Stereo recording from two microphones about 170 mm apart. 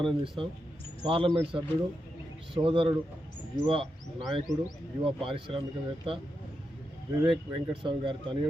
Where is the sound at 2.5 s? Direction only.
30° right (ahead or behind).